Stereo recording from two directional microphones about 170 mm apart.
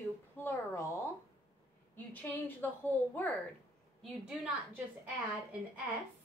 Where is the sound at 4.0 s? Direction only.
5° right (ahead or behind).